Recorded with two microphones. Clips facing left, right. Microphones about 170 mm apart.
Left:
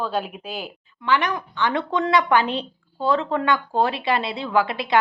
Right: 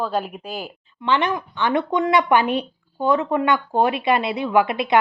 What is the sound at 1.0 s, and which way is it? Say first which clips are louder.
A woman's voice: right 1 dB; 25° right (ahead or behind).